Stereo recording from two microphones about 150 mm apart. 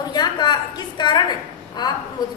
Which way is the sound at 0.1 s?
30° left (ahead or behind).